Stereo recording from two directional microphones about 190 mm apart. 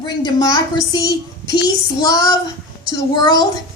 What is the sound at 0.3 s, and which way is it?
A woman's voice, 20° left (ahead or behind).